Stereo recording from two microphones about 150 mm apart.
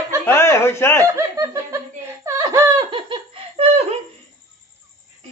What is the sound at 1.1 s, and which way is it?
Laughter, 20° right (ahead or behind).